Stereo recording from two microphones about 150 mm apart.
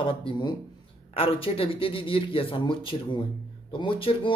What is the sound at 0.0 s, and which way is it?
Speech, 35° left (ahead or behind).